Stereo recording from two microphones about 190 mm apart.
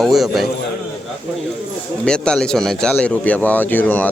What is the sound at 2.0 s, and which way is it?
Speech, 5° left (ahead or behind).